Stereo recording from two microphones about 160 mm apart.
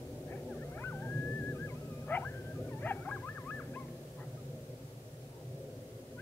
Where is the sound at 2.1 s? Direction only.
10° left (ahead or behind).